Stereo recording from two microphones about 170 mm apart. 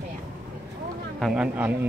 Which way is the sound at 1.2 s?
5° right (ahead or behind).